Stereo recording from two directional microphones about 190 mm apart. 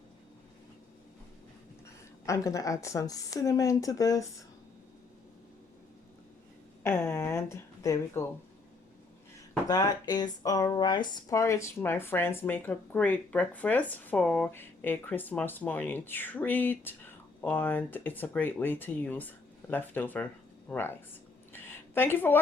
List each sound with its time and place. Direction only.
2.2 s speech: 15° left (ahead or behind)
6.8 s a woman's voice: 10° left (ahead or behind)
9.6 s speech: 20° left (ahead or behind)
21.5 s a sound: 10° left (ahead or behind)